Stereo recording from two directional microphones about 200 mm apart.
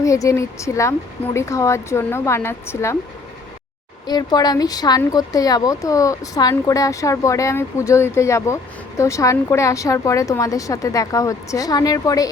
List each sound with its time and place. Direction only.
0.0 s speech: 15° left (ahead or behind)
4.0 s speech: 20° left (ahead or behind)